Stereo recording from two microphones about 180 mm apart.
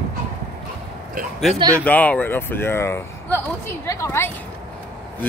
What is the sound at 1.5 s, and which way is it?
Speech, 20° right (ahead or behind).